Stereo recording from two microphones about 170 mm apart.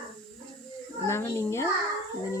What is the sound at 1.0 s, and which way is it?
Speech, 15° left (ahead or behind).